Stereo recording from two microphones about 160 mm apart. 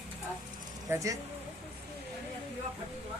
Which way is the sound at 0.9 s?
20° right (ahead or behind).